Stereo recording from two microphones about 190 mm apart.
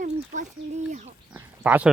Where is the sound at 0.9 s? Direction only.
40° right (ahead or behind).